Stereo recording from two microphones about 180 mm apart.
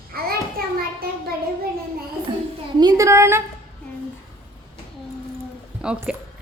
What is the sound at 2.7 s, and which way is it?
Speech, 20° right (ahead or behind).